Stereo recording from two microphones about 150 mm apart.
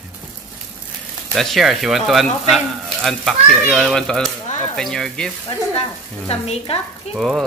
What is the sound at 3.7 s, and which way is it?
Speech, centre (ahead or behind).